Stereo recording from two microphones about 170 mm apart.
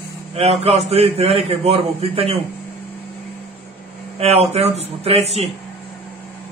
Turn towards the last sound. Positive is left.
turn(degrees=-40)  # may be behind; listen again after turning